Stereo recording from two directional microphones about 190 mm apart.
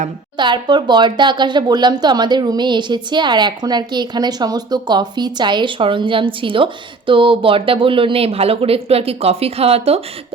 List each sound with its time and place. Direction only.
0.3 s speech: 25° right (ahead or behind)